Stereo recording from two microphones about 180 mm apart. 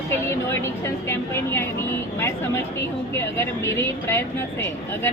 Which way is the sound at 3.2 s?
15° left (ahead or behind).